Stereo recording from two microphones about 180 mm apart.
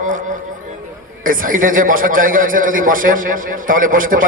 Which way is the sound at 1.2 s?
50° right (ahead or behind).